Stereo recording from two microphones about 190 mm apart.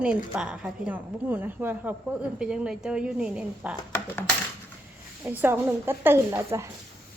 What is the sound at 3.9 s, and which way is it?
Coin, 10° left (ahead or behind).